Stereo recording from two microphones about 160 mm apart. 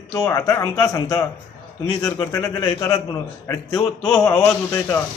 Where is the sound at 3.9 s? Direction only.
Centre (ahead or behind).